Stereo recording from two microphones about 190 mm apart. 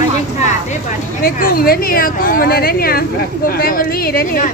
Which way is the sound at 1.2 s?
50° left (ahead or behind).